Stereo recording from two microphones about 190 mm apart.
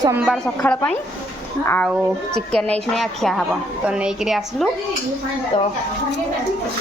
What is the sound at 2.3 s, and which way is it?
A woman's voice, 5° left (ahead or behind).